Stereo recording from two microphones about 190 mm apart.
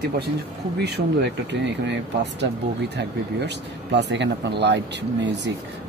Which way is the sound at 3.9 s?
65° right (ahead or behind).